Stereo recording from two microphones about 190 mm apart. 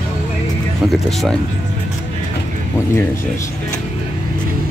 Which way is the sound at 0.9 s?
Centre (ahead or behind).